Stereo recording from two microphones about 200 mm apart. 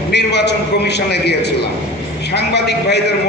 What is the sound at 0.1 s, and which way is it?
A man's voice, 60° left (ahead or behind).